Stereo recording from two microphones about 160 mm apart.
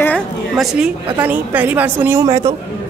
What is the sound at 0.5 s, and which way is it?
A woman's voice, centre (ahead or behind).